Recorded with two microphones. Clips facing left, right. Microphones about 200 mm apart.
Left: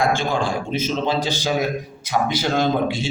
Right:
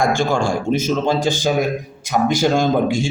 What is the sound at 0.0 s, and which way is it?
A man's voice, 50° right (ahead or behind).